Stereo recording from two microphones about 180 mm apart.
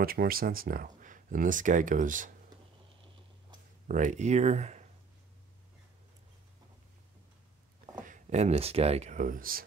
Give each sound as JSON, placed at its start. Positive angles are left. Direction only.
{"t": 0.0, "sound": "speech", "side_deg": -55}
{"t": 3.8, "sound": "speech", "side_deg": -45}
{"t": 8.0, "sound": "speech", "side_deg": -45}